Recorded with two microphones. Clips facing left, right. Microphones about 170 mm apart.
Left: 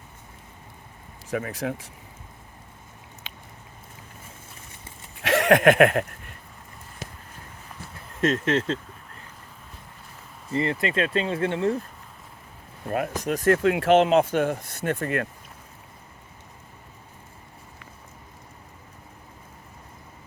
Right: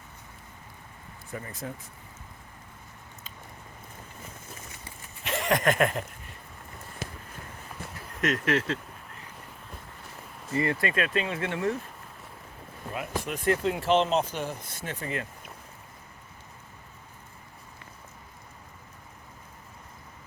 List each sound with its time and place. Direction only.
1.3 s speech: 85° left
3.3 s a sound: 80° left
5.2 s a sound: 75° left (ahead or behind)
8.2 s speech: 25° left (ahead or behind)
10.5 s speech: 25° left (ahead or behind)
12.9 s speech: 45° left (ahead or behind)
13.7 s speech: 75° left (ahead or behind)
13.9 s speech: 55° left (ahead or behind)